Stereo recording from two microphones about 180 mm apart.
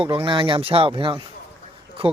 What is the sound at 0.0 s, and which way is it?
Speech, 30° right (ahead or behind).